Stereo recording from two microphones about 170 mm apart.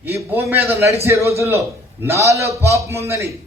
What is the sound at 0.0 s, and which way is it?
A man's voice, 10° right (ahead or behind).